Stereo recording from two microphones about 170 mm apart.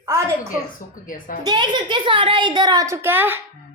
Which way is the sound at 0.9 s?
55° left (ahead or behind).